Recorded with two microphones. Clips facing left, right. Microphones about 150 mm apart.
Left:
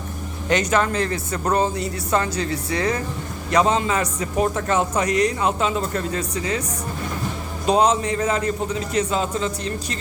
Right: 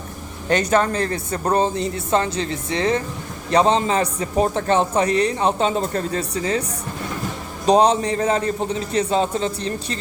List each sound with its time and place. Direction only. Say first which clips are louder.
0.4 s a man's voice: right 2 dB; 35° right (ahead or behind)
7.7 s a man's voice: right 3 dB; 35° right (ahead or behind)